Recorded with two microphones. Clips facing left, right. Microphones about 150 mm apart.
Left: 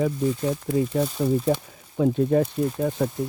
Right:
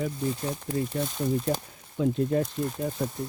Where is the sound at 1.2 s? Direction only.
65° left (ahead or behind).